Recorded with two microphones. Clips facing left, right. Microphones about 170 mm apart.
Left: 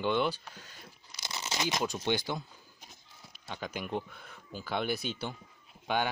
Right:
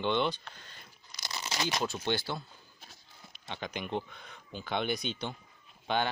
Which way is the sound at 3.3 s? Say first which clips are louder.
Even; 5° left (ahead or behind).